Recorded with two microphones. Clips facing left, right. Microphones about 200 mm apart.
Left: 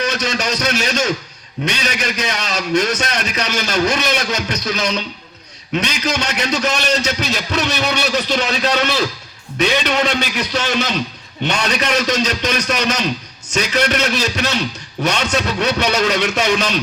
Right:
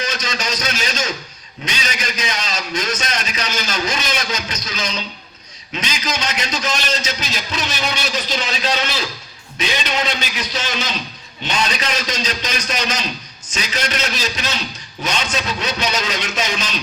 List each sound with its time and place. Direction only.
0.0 s a man's voice: 65° left (ahead or behind)